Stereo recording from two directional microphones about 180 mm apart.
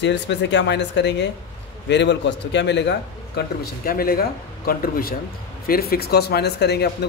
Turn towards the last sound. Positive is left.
turn(degrees=65)  # may be behind; listen again after turning